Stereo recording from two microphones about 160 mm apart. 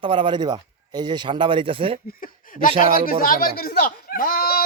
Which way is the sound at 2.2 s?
60° left (ahead or behind).